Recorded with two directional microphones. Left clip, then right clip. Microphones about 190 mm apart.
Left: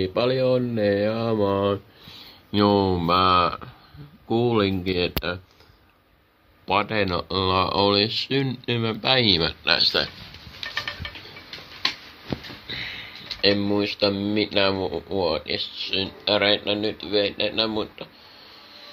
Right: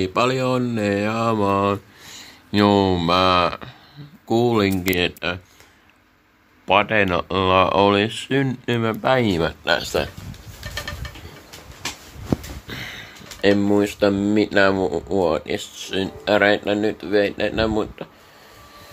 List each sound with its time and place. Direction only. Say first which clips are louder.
0.0 s speech: right 2 dB; 15° right (ahead or behind); by 5.4 s centre (ahead or behind)
6.7 s speech: right 5 dB; centre (ahead or behind)
12.6 s a sound: left 1 dB; 20° right (ahead or behind)
13.9 s speech: right 4 dB; 25° right (ahead or behind)